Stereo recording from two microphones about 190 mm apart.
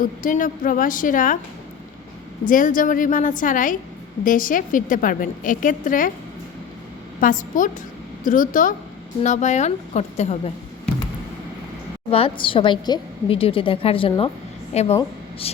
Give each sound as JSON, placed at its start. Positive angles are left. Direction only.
{"t": 0.0, "sound": "a woman's voice", "side_deg": 45}
{"t": 2.4, "sound": "a woman's voice", "side_deg": 45}
{"t": 7.2, "sound": "a woman's voice", "side_deg": 45}
{"t": 12.1, "sound": "a woman's voice", "side_deg": 30}